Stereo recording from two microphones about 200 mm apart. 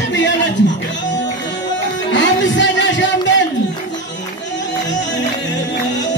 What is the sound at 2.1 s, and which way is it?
Music, 65° left (ahead or behind).